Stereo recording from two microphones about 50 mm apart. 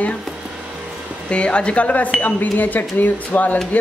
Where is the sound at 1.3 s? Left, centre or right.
Left.